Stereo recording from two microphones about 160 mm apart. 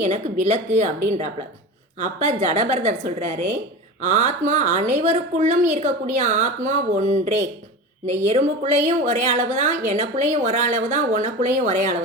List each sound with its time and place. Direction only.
0.0 s a woman's voice: 45° right (ahead or behind)
2.0 s a woman's voice: 45° right (ahead or behind)